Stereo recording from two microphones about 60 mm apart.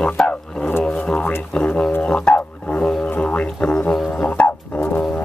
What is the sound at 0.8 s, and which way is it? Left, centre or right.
Music, centre.